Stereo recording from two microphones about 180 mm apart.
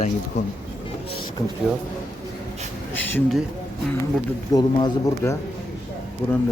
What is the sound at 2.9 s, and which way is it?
Speech, 10° left (ahead or behind).